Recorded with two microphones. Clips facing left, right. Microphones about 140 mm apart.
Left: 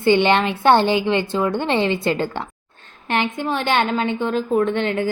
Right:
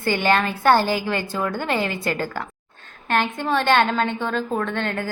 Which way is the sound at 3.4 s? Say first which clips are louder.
Right 3 dB; 15° left (ahead or behind).